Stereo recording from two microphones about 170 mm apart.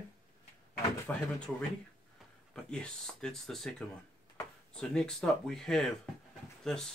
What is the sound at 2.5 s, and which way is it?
Speech, 5° left (ahead or behind).